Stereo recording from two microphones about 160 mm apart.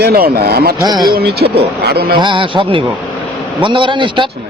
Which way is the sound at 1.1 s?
85° right.